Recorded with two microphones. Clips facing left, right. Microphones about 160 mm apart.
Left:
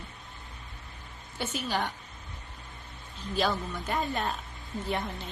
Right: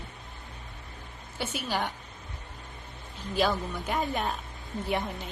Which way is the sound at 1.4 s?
10° right (ahead or behind).